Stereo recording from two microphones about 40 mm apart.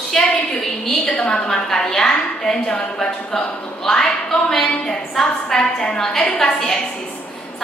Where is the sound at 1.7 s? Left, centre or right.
Centre.